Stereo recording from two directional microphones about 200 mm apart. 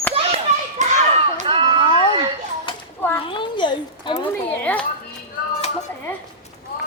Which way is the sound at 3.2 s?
25° left (ahead or behind).